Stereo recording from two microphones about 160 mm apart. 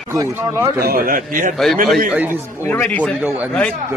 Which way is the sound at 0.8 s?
65° right (ahead or behind).